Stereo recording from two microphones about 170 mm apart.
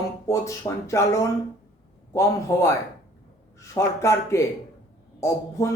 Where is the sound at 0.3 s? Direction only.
20° left (ahead or behind).